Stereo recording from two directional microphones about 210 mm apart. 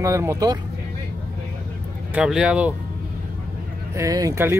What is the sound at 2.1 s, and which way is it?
Speech, 5° right (ahead or behind).